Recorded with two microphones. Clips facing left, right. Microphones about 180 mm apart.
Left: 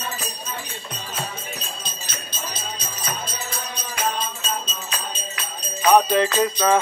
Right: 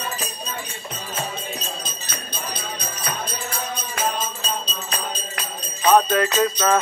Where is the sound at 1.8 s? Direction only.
55° right (ahead or behind); by 5.2 s 35° right (ahead or behind).